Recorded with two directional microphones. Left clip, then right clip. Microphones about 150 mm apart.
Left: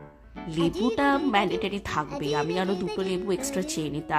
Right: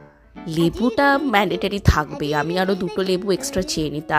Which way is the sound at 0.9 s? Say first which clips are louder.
Right 7 dB; 45° right (ahead or behind).